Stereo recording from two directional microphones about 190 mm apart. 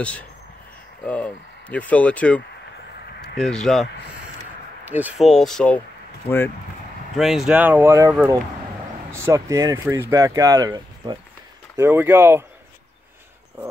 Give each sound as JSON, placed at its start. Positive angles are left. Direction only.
{"t": 0.0, "sound": "speech", "side_deg": 5}
{"t": 4.8, "sound": "speech", "side_deg": -10}
{"t": 7.2, "sound": "speech", "side_deg": 0}
{"t": 9.1, "sound": "speech", "side_deg": -15}